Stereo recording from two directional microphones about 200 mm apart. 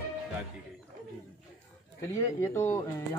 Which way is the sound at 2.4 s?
15° left (ahead or behind).